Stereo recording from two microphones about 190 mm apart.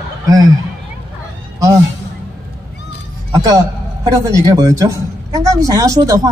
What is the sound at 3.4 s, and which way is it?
A man's voice, 20° right (ahead or behind).